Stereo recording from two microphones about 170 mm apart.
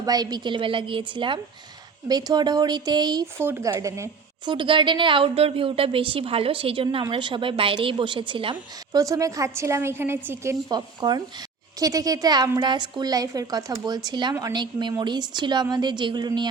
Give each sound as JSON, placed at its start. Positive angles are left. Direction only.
{"t": 0.0, "sound": "a woman's voice", "side_deg": -20}
{"t": 4.5, "sound": "a woman's voice", "side_deg": -30}